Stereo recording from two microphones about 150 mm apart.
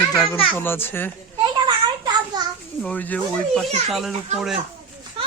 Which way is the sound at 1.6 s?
30° right (ahead or behind).